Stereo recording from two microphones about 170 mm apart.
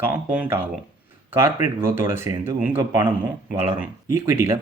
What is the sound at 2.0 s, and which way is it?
Speech, 15° right (ahead or behind).